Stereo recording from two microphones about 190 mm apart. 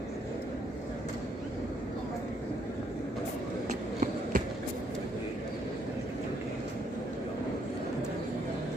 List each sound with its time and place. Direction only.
4.0 s basketball bounce: 45° right (ahead or behind)